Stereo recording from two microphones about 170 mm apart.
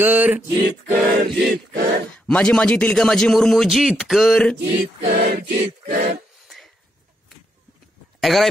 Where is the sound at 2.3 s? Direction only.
5° left (ahead or behind).